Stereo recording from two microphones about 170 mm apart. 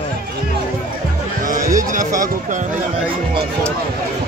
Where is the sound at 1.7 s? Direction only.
50° right (ahead or behind).